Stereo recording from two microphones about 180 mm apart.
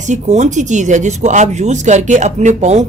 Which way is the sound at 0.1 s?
40° right (ahead or behind).